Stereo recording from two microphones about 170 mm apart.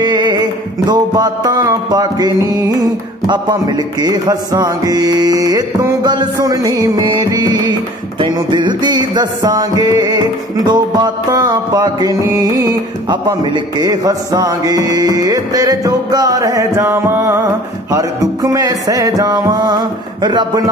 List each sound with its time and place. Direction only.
0.0 s music: 25° right (ahead or behind)